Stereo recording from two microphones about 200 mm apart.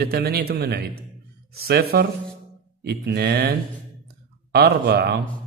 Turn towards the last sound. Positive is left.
turn(degrees=-55)  # may be behind; listen again after turning